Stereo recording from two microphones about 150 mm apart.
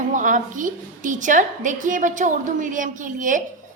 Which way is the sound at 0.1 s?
60° right (ahead or behind).